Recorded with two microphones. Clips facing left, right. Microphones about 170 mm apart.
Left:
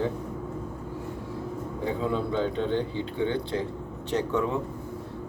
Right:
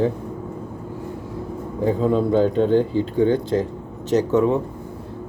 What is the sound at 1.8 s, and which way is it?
Speech, 40° right (ahead or behind).